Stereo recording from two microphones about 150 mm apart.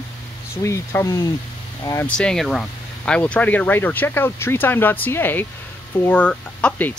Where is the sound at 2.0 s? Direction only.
5° left (ahead or behind).